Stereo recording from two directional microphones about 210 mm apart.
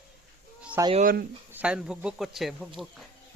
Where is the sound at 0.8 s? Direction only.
15° right (ahead or behind).